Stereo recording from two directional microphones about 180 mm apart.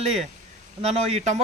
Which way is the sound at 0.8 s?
35° right (ahead or behind).